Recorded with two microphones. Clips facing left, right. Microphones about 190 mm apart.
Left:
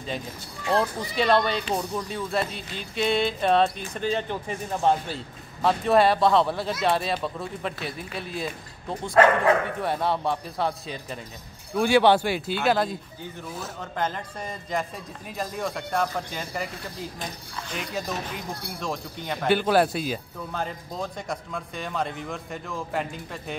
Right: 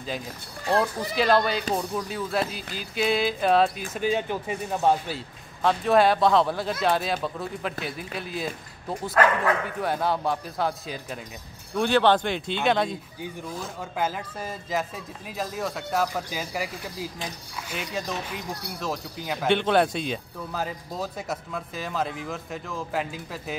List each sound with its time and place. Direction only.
0.7 s music: centre (ahead or behind)
9.1 s speech: 25° left (ahead or behind)
9.8 s music: centre (ahead or behind)
11.7 s music: 10° left (ahead or behind)
13.7 s music: 5° right (ahead or behind)